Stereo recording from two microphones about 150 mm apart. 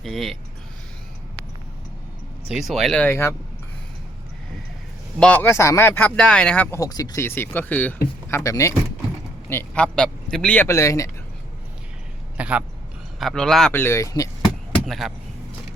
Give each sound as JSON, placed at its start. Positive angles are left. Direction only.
{"t": 0.0, "sound": "speech", "side_deg": 0}
{"t": 2.5, "sound": "speech", "side_deg": 0}
{"t": 5.2, "sound": "speech", "side_deg": 10}
{"t": 6.7, "sound": "speech", "side_deg": 25}
{"t": 12.4, "sound": "a man's voice", "side_deg": -10}
{"t": 13.1, "sound": "speech", "side_deg": 0}
{"t": 13.7, "sound": "speech", "side_deg": 15}
{"t": 14.8, "sound": "speech", "side_deg": 0}